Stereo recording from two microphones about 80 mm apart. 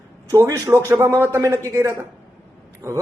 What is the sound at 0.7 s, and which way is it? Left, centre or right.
Speech, right.